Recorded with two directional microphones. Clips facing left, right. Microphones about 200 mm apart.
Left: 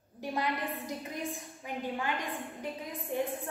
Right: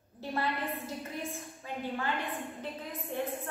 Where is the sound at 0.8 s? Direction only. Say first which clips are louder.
Left 1 dB; 15° left (ahead or behind).